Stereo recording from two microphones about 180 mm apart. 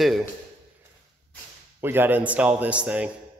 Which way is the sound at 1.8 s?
10° right (ahead or behind).